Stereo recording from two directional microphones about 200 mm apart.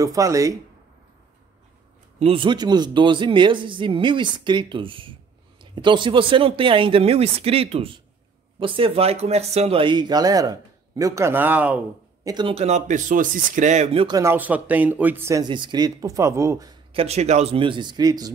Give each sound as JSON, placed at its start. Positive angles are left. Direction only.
{"t": 0.0, "sound": "speech", "side_deg": -15}
{"t": 2.1, "sound": "speech", "side_deg": -30}
{"t": 12.3, "sound": "speech", "side_deg": -25}
{"t": 14.0, "sound": "speech", "side_deg": -15}
{"t": 17.0, "sound": "speech", "side_deg": -35}